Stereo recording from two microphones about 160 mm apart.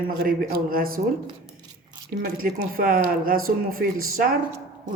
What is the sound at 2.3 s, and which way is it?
Speech, 60° right (ahead or behind).